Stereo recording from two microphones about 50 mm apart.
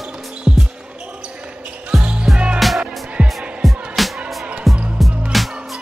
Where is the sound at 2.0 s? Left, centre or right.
Right.